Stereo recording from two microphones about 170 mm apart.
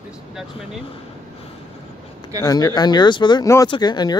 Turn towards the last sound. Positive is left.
turn(degrees=25)  # may be behind; listen again after turning